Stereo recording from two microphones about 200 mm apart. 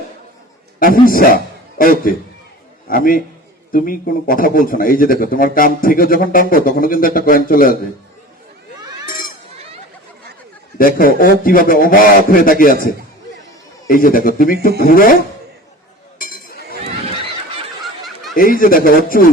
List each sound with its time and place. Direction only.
0.8 s speech: 45° left (ahead or behind)
10.8 s speech: 45° left (ahead or behind)
16.1 s chink: 45° left (ahead or behind)
18.0 s snicker: centre (ahead or behind)
18.3 s speech: 45° left (ahead or behind)